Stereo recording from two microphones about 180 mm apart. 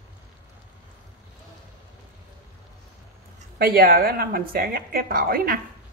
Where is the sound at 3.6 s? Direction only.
55° right (ahead or behind).